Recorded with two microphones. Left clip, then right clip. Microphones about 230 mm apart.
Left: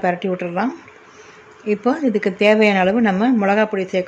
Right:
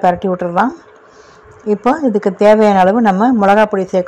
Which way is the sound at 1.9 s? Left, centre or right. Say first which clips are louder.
Right 5 dB; centre.